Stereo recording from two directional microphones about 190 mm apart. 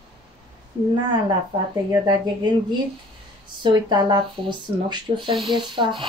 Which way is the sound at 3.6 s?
25° right (ahead or behind).